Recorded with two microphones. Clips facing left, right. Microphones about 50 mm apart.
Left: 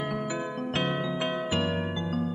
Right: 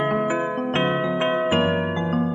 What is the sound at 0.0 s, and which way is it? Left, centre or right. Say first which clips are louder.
Music: right 9 dB; right.